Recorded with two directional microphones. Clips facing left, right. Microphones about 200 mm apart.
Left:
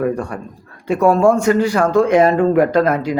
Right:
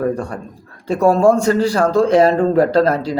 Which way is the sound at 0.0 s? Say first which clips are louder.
Even; 35° right (ahead or behind).